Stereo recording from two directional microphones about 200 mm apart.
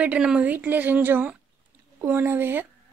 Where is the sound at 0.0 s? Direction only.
5° right (ahead or behind).